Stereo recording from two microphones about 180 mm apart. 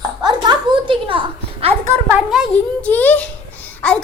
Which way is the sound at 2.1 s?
5° right (ahead or behind).